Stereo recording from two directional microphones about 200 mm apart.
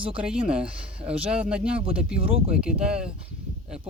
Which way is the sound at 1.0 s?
5° right (ahead or behind).